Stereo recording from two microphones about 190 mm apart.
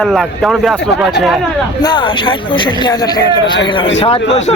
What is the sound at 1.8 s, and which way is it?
A man's voice, 25° left (ahead or behind).